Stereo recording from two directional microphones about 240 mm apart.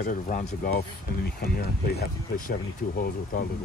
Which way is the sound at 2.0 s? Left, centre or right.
Left.